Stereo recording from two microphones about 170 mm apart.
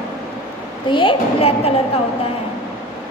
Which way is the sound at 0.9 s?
30° left (ahead or behind).